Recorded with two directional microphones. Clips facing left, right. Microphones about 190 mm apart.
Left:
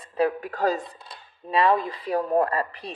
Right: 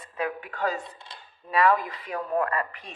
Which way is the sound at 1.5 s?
25° left (ahead or behind).